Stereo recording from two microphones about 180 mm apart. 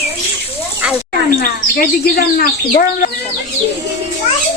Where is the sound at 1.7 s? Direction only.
60° left (ahead or behind).